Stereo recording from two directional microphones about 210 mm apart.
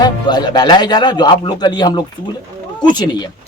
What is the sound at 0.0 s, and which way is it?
Speech, 20° left (ahead or behind).